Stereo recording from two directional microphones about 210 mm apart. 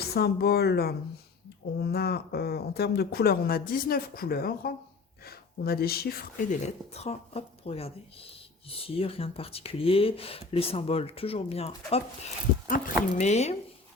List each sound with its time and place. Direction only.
0.0 s speech: 50° left (ahead or behind)
6.6 s speech: 30° left (ahead or behind)